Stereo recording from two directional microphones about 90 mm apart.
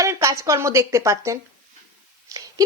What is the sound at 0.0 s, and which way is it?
A woman's voice, 35° right (ahead or behind).